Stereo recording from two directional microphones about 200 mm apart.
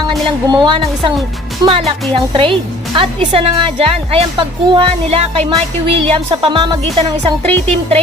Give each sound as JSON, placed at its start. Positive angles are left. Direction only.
{"t": 0.4, "sound": "a woman's voice", "side_deg": -20}